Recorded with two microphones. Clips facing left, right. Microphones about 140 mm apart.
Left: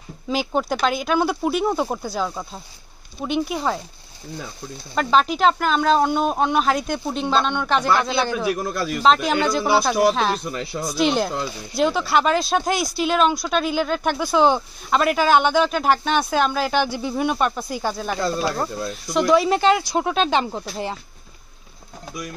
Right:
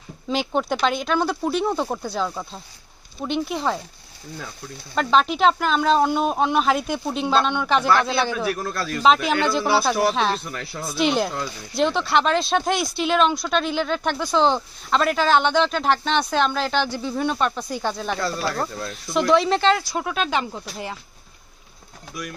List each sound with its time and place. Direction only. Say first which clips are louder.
0.3 s speech: left 1 dB; 5° left (ahead or behind)
4.9 s speech: left 1 dB; centre (ahead or behind)
8.5 s speech: left 2 dB; 15° left (ahead or behind)
9.0 s speech: even; centre (ahead or behind)
10.4 s speech: left 5 dB; 15° left (ahead or behind)
10.9 s speech: left 1 dB; centre (ahead or behind)
18.2 s speech: left 4 dB; 20° left (ahead or behind)
18.9 s speech: left 1 dB; centre (ahead or behind)
19.9 s speech: left 4 dB; 25° left (ahead or behind)